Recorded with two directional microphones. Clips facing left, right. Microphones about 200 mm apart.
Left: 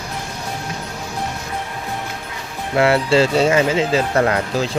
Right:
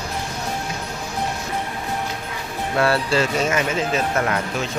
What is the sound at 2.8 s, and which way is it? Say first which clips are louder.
Speech: left 5 dB; 25° left (ahead or behind).